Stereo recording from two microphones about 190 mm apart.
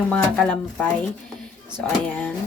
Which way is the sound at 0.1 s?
5° left (ahead or behind).